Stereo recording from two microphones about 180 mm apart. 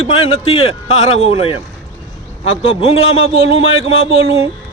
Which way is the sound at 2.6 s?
30° left (ahead or behind).